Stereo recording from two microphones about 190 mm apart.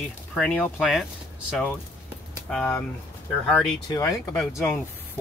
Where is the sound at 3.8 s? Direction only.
20° left (ahead or behind).